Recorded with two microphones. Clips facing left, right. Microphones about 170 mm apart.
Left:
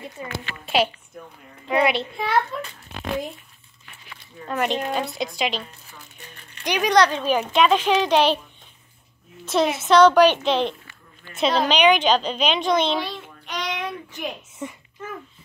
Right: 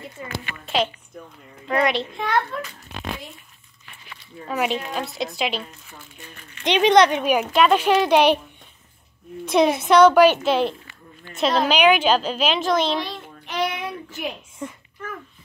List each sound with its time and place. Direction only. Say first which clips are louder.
0.2 s a woman's voice: left 1 dB; 20° left (ahead or behind)
0.7 s a woman's voice: left 2 dB; 10° left (ahead or behind)
4.5 s a woman's voice: left 1 dB; 5° right (ahead or behind)
6.6 s speech: right 3 dB; 25° right (ahead or behind)
9.5 s a woman's voice: right 2 dB; 15° right (ahead or behind)
15.0 s a sound: even; 25° left (ahead or behind)